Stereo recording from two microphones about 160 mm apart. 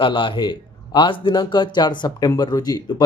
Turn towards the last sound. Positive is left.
turn(degrees=25)  # may be behind; listen again after turning